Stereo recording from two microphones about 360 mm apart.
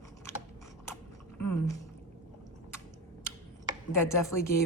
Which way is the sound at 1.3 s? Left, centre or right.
Left.